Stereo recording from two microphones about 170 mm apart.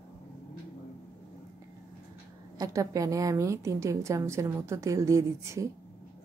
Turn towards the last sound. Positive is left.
turn(degrees=-20)  # may be behind; listen again after turning